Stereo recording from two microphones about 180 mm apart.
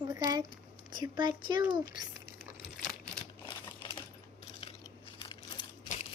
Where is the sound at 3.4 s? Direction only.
25° left (ahead or behind).